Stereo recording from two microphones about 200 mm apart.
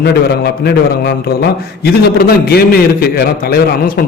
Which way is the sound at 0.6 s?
55° left (ahead or behind).